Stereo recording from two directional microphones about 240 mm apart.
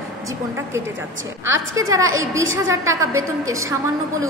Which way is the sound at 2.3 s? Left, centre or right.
Centre.